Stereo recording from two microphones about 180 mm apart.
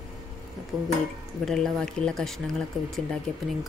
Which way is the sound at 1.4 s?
Centre (ahead or behind).